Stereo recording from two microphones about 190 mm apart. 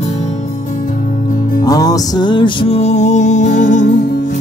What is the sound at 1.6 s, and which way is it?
Music, 20° left (ahead or behind).